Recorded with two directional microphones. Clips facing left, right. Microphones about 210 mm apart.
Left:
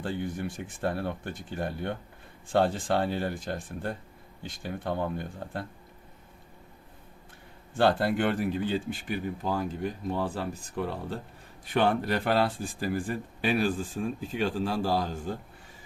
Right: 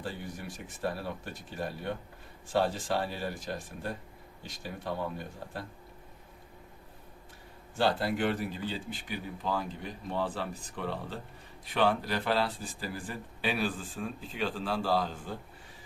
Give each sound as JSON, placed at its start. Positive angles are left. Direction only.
{"t": 0.0, "sound": "speech", "side_deg": 55}
{"t": 7.8, "sound": "speech", "side_deg": 55}